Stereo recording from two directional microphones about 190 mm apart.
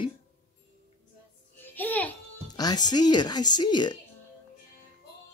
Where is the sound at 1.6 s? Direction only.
10° left (ahead or behind).